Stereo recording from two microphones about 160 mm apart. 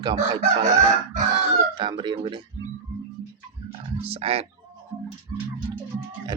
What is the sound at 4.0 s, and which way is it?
Speech, 40° right (ahead or behind).